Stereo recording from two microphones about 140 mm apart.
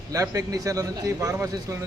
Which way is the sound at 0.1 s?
25° right (ahead or behind).